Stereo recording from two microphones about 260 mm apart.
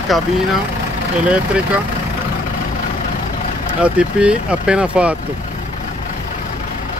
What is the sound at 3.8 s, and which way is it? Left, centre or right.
Speech, centre.